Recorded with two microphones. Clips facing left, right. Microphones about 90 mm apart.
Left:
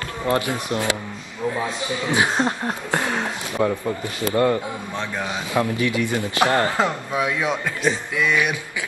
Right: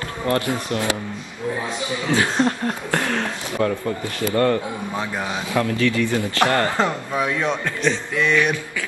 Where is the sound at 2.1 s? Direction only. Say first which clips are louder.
Right 1 dB; 15° left (ahead or behind).